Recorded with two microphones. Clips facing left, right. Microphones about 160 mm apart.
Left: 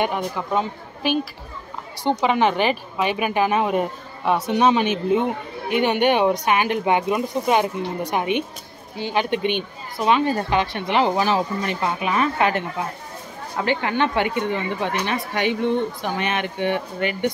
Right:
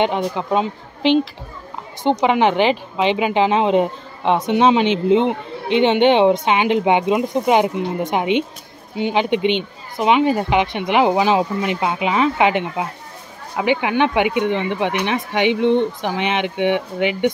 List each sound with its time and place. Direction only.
0.0 s a woman's voice: 20° right (ahead or behind)